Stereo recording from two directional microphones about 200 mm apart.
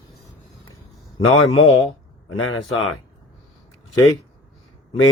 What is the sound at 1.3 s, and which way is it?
Speech, 90° left.